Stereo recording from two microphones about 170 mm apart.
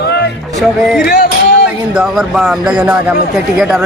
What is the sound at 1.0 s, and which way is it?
Speech, 70° left (ahead or behind).